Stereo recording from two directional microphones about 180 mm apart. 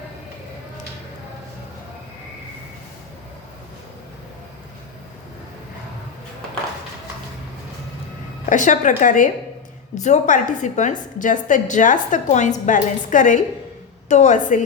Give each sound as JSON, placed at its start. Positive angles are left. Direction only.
{"t": 8.4, "sound": "a woman's voice", "side_deg": 45}